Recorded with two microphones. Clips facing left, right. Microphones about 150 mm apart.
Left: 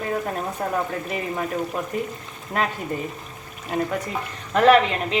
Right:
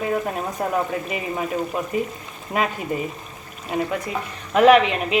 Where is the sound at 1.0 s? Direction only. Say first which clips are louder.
Right 1 dB; 10° right (ahead or behind).